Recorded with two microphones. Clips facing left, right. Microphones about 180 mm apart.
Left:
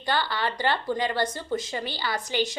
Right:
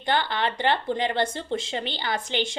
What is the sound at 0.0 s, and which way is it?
A woman's voice, 20° right (ahead or behind).